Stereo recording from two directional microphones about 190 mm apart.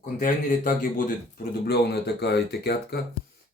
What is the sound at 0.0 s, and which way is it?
Speech, 45° left (ahead or behind).